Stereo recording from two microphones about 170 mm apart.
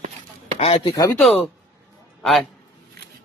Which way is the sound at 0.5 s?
35° left (ahead or behind).